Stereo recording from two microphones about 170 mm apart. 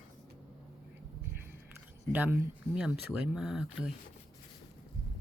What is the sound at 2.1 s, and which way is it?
Speech, 10° right (ahead or behind).